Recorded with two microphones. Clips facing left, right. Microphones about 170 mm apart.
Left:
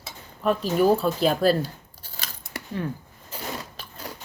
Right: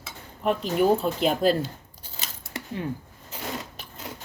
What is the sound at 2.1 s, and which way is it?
Scissors, 20° right (ahead or behind).